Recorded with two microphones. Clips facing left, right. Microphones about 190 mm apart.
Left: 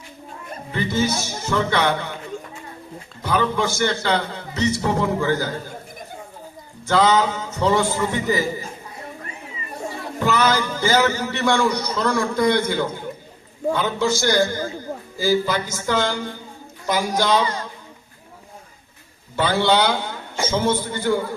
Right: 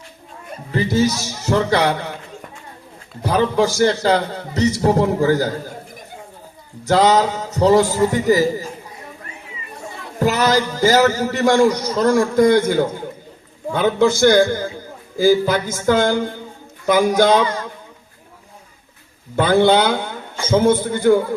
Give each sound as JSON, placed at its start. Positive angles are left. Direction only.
{"t": 0.9, "sound": "a man's voice", "side_deg": -40}
{"t": 3.2, "sound": "a man's voice", "side_deg": -35}
{"t": 6.8, "sound": "a man's voice", "side_deg": -40}
{"t": 10.2, "sound": "a man's voice", "side_deg": -40}
{"t": 19.4, "sound": "a man's voice", "side_deg": -50}